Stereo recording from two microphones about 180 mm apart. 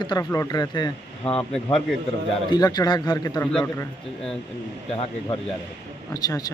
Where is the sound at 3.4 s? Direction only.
5° left (ahead or behind).